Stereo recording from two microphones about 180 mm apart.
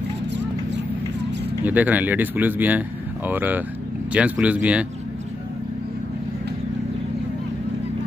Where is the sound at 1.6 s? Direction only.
10° right (ahead or behind).